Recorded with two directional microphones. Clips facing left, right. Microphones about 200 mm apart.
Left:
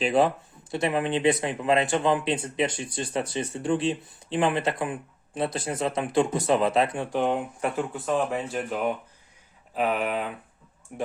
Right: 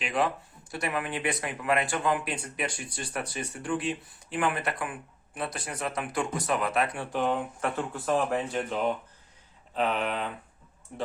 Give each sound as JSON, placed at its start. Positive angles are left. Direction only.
{"t": 0.0, "sound": "speech", "side_deg": 30}
{"t": 7.8, "sound": "speech", "side_deg": 0}